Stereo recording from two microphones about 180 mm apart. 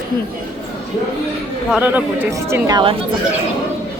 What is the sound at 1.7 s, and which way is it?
Speech, 10° right (ahead or behind).